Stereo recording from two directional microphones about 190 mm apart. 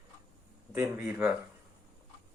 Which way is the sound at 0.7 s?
10° right (ahead or behind).